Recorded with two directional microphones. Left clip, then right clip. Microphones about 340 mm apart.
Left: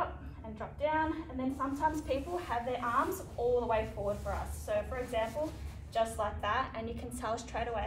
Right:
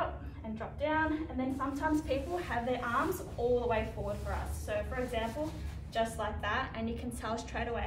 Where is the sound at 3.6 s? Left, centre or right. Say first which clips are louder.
Left 1 dB; centre.